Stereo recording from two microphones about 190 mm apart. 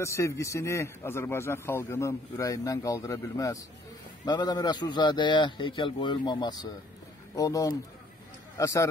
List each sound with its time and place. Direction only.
0.0 s a man's voice: 15° left (ahead or behind)